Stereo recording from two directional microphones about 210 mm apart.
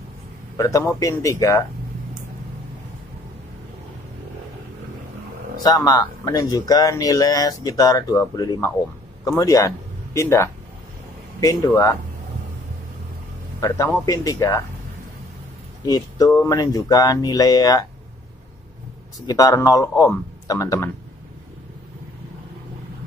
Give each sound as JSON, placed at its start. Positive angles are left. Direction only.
{"t": 0.6, "sound": "speech", "side_deg": 15}
{"t": 5.6, "sound": "speech", "side_deg": 15}
{"t": 13.6, "sound": "speech", "side_deg": 15}
{"t": 15.8, "sound": "speech", "side_deg": 20}
{"t": 19.1, "sound": "speech", "side_deg": 15}